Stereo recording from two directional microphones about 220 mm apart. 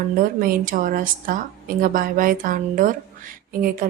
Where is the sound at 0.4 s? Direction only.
40° right (ahead or behind).